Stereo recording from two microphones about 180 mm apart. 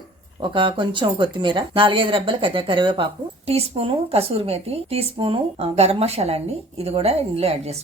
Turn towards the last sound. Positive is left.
turn(degrees=-35)  # may be behind; listen again after turning